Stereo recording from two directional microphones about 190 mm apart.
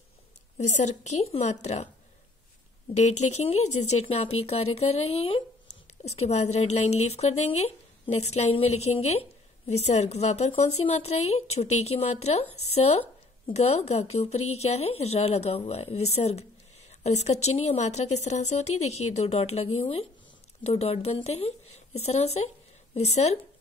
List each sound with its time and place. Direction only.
0.6 s speech: 40° left (ahead or behind)
3.0 s speech: 35° left (ahead or behind)